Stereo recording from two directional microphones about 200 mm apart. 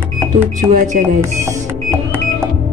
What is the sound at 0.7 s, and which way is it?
Music, 40° right (ahead or behind).